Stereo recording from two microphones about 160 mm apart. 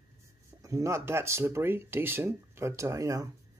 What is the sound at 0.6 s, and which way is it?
Speech, 20° right (ahead or behind).